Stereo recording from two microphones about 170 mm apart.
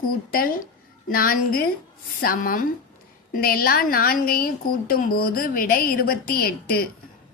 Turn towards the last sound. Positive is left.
turn(degrees=60)  # may be behind; listen again after turning